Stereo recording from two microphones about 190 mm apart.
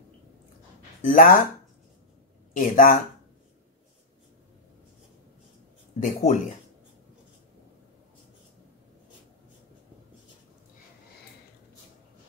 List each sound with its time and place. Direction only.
1.0 s speech: 45° left (ahead or behind)
2.5 s speech: 45° left (ahead or behind)
5.9 s speech: 45° left (ahead or behind)